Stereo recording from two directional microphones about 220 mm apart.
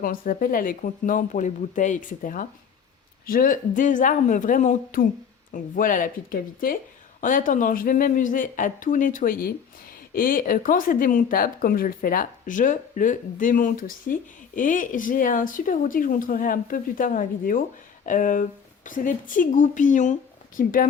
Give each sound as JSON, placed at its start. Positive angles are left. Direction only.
{"t": 0.0, "sound": "speech", "side_deg": 40}